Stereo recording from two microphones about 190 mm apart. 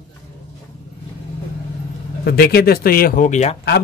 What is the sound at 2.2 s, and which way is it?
Speech, 55° left (ahead or behind).